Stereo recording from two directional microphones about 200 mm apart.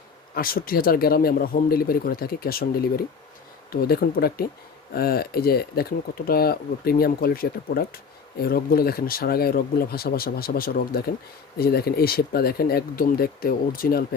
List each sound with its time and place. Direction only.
0.3 s speech: 45° left (ahead or behind)